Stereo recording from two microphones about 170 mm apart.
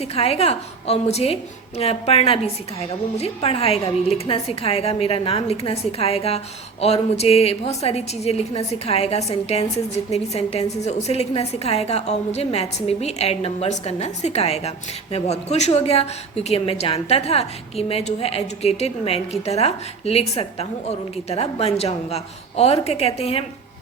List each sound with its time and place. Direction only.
0.0 s a woman's voice: 35° left (ahead or behind)